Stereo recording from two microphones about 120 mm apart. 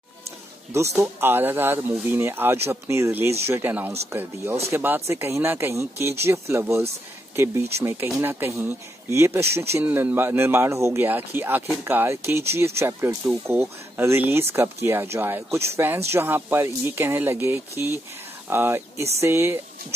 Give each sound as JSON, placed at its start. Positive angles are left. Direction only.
{"t": 0.9, "sound": "speech", "side_deg": -20}